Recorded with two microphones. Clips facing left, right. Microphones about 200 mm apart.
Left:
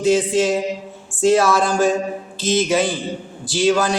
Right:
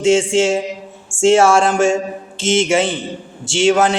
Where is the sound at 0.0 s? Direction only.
25° right (ahead or behind).